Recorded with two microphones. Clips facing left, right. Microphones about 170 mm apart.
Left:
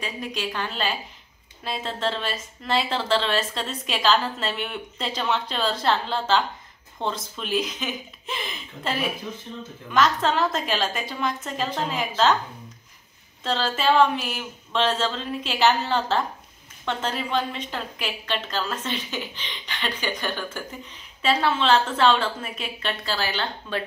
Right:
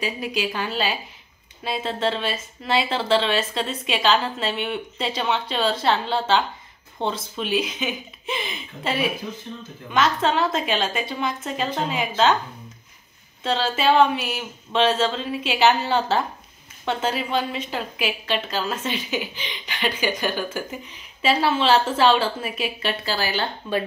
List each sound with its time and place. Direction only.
0.0 s a woman's voice: 10° right (ahead or behind)
13.4 s a woman's voice: centre (ahead or behind)